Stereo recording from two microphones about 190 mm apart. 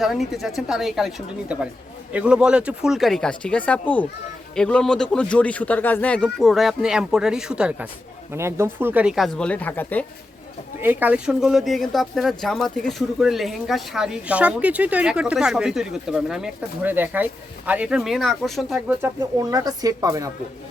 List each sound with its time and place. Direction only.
0.3 s speech: centre (ahead or behind)
10.8 s speech: 10° right (ahead or behind)
19.0 s speech: 20° right (ahead or behind)